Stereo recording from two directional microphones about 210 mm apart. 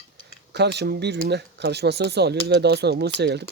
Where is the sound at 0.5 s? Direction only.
55° right (ahead or behind).